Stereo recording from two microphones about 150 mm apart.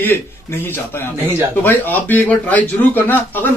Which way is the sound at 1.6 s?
15° left (ahead or behind).